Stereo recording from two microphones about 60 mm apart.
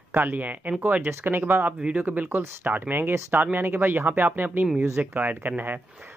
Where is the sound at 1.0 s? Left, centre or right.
Right.